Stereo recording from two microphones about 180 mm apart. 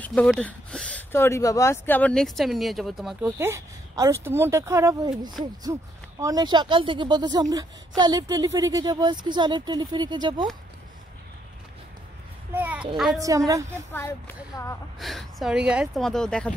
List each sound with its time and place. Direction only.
0.0 s speech: 5° left (ahead or behind); by 10.4 s 25° right (ahead or behind)
12.5 s a child's voice: 10° right (ahead or behind)
13.9 s speech: 10° left (ahead or behind)
15.0 s speech: centre (ahead or behind)